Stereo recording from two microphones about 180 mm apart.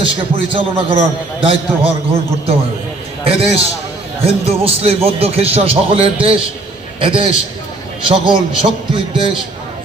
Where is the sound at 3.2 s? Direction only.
30° right (ahead or behind).